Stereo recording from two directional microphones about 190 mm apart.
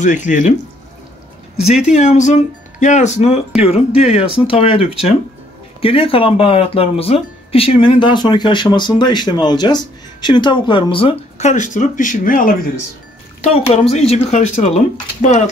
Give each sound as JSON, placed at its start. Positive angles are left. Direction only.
{"t": 0.0, "sound": "speech", "side_deg": 40}
{"t": 1.9, "sound": "speech", "side_deg": 40}
{"t": 13.4, "sound": "speech", "side_deg": 30}